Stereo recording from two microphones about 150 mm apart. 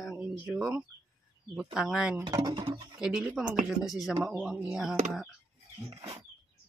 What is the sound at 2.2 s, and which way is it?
Speech, 25° right (ahead or behind).